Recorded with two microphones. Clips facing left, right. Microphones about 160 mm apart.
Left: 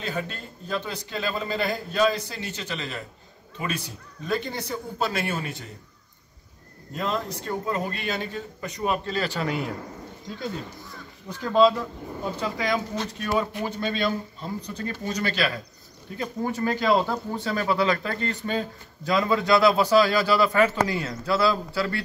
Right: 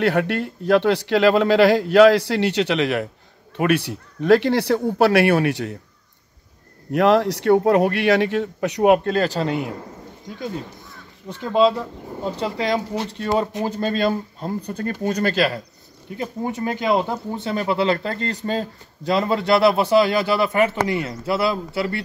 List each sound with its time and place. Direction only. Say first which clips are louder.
0.0 s a man's voice: right 12 dB; 75° right (ahead or behind)
6.9 s a man's voice: right 12 dB; 75° right (ahead or behind); by 9.4 s 50° right (ahead or behind)
9.4 s speech: right 5 dB; 20° right (ahead or behind)
11.2 s speech: right 2 dB; 20° right (ahead or behind); by 15.6 s 45° right (ahead or behind)
16.2 s speech: right 2 dB; 20° right (ahead or behind)